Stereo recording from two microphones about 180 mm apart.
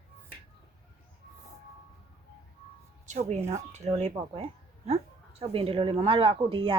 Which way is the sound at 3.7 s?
40° right (ahead or behind).